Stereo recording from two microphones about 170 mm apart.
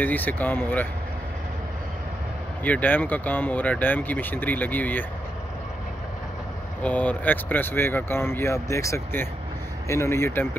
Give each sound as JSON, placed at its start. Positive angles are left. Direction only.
{"t": 0.0, "sound": "speech", "side_deg": 10}
{"t": 2.6, "sound": "speech", "side_deg": 10}
{"t": 6.8, "sound": "speech", "side_deg": 10}